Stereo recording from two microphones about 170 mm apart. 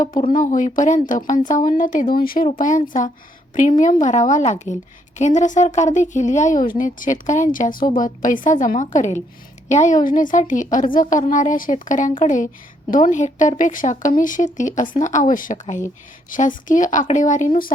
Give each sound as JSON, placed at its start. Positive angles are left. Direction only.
{"t": 0.3, "sound": "a woman's voice", "side_deg": 50}